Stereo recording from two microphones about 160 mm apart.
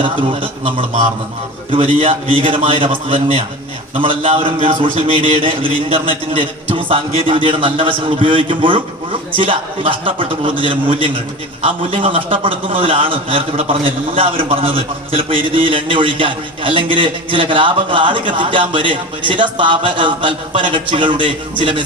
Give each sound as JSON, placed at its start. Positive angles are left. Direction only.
{"t": 0.0, "sound": "a man's voice", "side_deg": -35}